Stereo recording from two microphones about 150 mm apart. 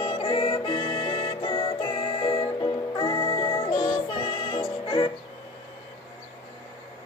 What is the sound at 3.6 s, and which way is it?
Music, 30° left (ahead or behind).